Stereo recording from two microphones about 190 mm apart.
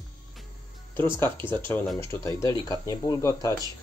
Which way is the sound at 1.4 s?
10° left (ahead or behind).